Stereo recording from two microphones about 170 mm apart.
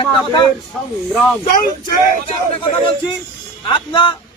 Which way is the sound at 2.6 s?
30° left (ahead or behind).